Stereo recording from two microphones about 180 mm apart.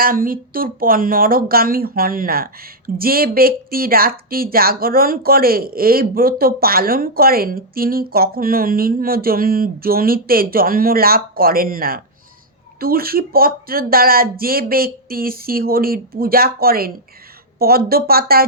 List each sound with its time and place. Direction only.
0.0 s speech: 50° right (ahead or behind)